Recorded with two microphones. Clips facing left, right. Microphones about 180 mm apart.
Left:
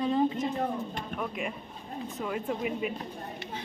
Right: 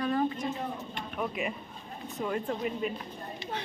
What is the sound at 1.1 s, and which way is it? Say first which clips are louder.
Speech: right 3 dB; 5° right (ahead or behind).